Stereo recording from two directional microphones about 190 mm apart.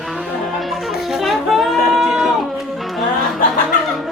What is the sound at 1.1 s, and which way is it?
Music, centre (ahead or behind).